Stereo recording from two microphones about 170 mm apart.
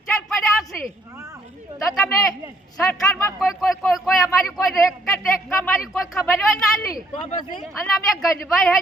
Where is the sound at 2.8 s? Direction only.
5° left (ahead or behind).